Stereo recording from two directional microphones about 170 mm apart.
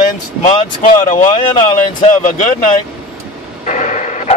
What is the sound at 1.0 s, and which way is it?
Speech, 50° left (ahead or behind).